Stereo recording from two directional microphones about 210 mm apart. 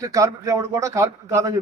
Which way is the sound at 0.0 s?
15° right (ahead or behind).